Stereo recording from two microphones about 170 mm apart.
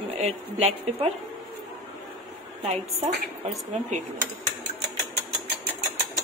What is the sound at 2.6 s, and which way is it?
A woman's voice, 40° right (ahead or behind).